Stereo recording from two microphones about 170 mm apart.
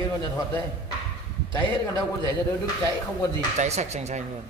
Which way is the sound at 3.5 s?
40° right (ahead or behind).